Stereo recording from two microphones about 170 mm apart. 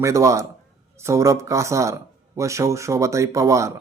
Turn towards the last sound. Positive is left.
turn(degrees=-20)  # may be behind; listen again after turning